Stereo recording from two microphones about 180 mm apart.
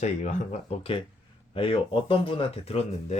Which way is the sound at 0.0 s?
40° left (ahead or behind).